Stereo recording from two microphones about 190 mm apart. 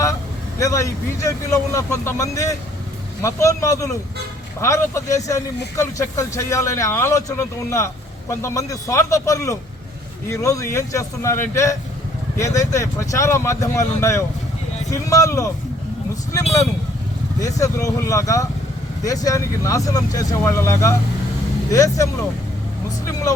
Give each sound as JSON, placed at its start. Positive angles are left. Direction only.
{"t": 0.6, "sound": "speech", "side_deg": 15}
{"t": 17.4, "sound": "speech", "side_deg": 15}